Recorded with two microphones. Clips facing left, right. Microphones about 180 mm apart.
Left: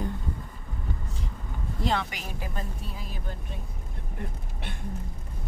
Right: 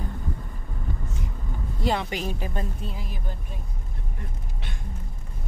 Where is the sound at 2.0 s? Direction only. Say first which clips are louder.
Right 7 dB; 30° right (ahead or behind).